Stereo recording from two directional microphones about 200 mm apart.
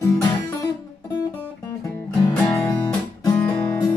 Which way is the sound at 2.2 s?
15° left (ahead or behind).